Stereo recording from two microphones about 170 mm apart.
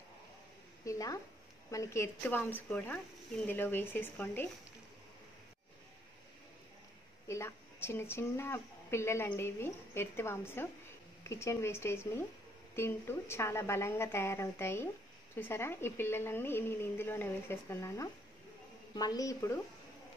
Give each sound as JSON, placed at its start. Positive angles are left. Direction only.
{"t": 0.8, "sound": "a woman's voice", "side_deg": 20}
{"t": 7.2, "sound": "a woman's voice", "side_deg": 15}